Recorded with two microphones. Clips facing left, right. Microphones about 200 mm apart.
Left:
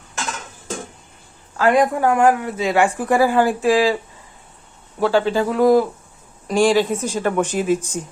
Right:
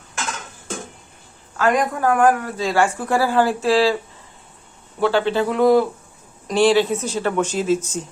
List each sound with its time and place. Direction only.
1.5 s speech: 30° left (ahead or behind); by 3.9 s 15° left (ahead or behind)
4.9 s a man's voice: 5° left (ahead or behind)